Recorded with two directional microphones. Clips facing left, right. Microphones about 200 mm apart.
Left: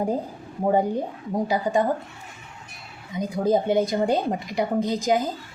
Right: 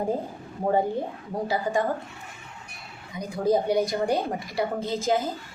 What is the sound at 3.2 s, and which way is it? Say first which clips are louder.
A woman's voice: left 2 dB; 20° left (ahead or behind).